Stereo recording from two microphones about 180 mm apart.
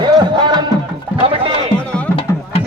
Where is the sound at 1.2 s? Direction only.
35° right (ahead or behind).